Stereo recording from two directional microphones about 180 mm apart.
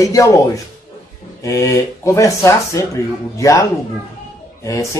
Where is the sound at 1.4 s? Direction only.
15° left (ahead or behind).